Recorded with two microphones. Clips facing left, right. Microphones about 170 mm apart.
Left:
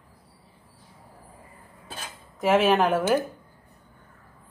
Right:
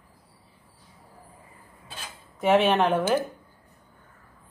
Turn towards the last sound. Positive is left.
turn(degrees=5)  # may be behind; listen again after turning